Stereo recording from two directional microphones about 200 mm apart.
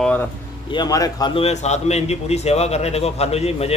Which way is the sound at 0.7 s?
20° left (ahead or behind).